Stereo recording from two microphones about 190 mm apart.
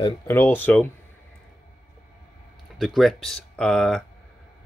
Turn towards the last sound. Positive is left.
turn(degrees=5)  # may be behind; listen again after turning